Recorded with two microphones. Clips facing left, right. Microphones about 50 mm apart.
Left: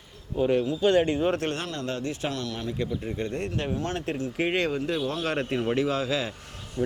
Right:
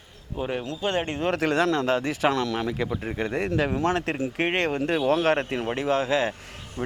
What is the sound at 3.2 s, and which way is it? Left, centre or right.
Speech, right.